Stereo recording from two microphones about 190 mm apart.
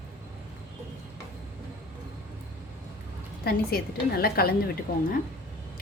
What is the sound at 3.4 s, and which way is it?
A woman's voice, 55° left (ahead or behind).